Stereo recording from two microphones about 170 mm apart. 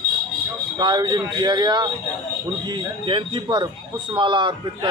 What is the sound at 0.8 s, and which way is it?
Speech, 25° right (ahead or behind).